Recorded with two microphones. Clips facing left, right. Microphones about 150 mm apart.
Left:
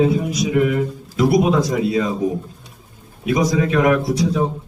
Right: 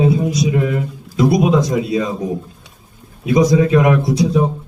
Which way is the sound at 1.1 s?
20° right (ahead or behind).